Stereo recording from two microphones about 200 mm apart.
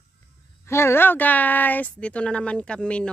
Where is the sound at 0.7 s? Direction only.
10° left (ahead or behind).